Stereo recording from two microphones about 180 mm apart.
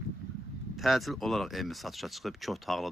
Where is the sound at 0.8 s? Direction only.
Centre (ahead or behind).